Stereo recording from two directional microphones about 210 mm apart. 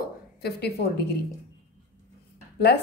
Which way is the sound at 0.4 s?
50° left (ahead or behind).